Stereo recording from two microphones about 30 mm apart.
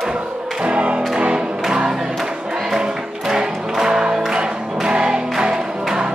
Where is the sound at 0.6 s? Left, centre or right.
Right.